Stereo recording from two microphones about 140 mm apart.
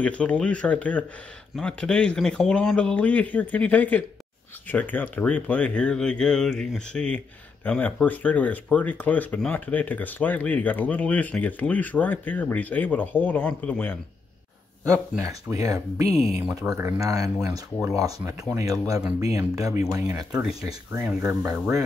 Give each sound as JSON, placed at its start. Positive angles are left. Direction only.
{"t": 0.0, "sound": "speech", "side_deg": 10}
{"t": 14.9, "sound": "speech", "side_deg": -25}